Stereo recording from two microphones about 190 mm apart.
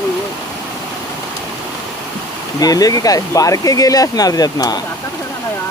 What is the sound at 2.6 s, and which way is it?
Speech, 20° left (ahead or behind).